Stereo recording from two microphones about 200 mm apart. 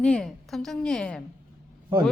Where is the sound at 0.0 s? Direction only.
5° left (ahead or behind).